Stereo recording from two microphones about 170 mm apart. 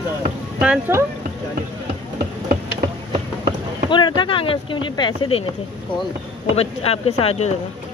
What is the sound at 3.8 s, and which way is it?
Speech, 25° left (ahead or behind).